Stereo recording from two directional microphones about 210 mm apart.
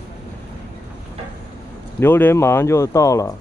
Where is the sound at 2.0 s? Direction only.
10° left (ahead or behind).